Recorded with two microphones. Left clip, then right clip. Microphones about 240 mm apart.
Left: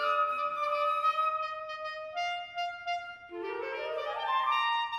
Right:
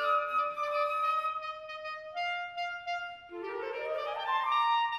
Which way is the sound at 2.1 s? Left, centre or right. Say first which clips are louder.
Even; right.